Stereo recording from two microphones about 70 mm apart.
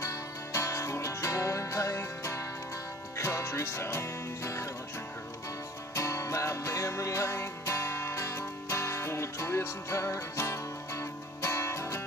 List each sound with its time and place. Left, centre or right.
0.0 s music: left
5.9 s music: left